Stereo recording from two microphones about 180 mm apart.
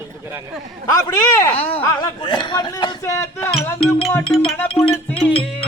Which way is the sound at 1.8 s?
20° left (ahead or behind).